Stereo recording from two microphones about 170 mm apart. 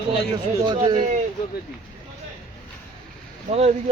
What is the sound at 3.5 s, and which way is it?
Speech, 40° right (ahead or behind).